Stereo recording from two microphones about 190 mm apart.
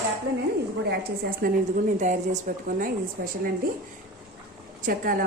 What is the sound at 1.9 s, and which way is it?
A woman's voice, 40° right (ahead or behind).